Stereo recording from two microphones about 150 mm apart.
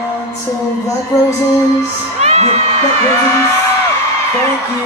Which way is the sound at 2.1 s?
45° right (ahead or behind).